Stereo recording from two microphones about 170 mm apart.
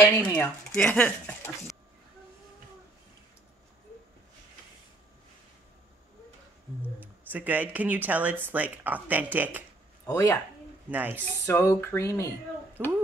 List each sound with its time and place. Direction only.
0.0 s speech: 10° left (ahead or behind)
7.0 s speech: 10° right (ahead or behind)
10.0 s speech: 20° left (ahead or behind)
10.9 s speech: 10° right (ahead or behind)
11.4 s speech: 15° left (ahead or behind)
12.8 s speech: 10° right (ahead or behind)